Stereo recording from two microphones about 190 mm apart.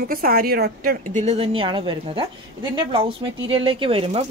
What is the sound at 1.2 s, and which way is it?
Speech, 30° right (ahead or behind).